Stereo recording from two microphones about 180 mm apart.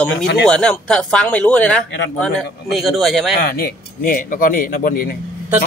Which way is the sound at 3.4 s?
60° left (ahead or behind).